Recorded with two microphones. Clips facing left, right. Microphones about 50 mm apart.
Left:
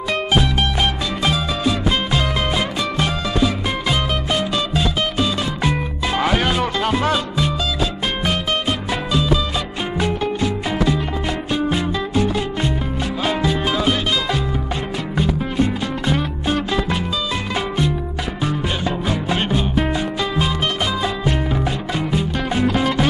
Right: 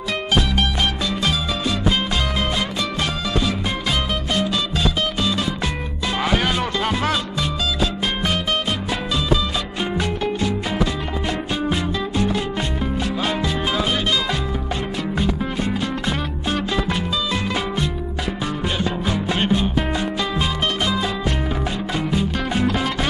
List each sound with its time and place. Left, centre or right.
1.2 s music: centre
9.9 s music: centre
18.4 s music: centre